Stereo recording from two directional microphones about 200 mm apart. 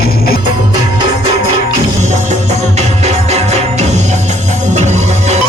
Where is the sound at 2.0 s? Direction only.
35° right (ahead or behind).